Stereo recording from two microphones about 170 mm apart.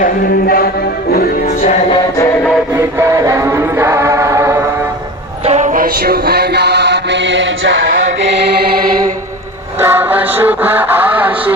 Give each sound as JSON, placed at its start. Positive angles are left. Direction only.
{"t": 0.0, "sound": "music", "side_deg": 60}
{"t": 3.0, "sound": "choir", "side_deg": -20}
{"t": 5.5, "sound": "mantra", "side_deg": -45}
{"t": 9.8, "sound": "music", "side_deg": -10}